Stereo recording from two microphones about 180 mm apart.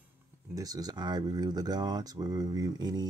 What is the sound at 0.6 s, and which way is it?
Speech, 20° right (ahead or behind).